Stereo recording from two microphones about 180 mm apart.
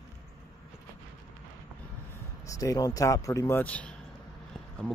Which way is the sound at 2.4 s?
20° left (ahead or behind).